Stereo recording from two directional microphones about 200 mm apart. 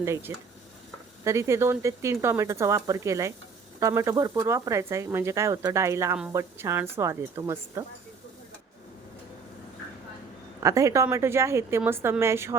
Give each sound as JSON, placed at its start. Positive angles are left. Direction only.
{"t": 0.0, "sound": "speech", "side_deg": -10}
{"t": 10.6, "sound": "speech", "side_deg": -15}